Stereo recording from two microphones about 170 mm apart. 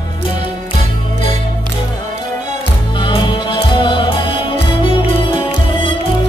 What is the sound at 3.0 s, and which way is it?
Music, 30° left (ahead or behind).